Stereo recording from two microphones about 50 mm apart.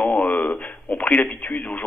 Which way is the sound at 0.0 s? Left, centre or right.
Left.